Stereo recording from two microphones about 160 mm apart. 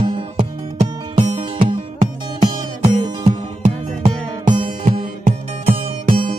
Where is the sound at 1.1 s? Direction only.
45° right (ahead or behind).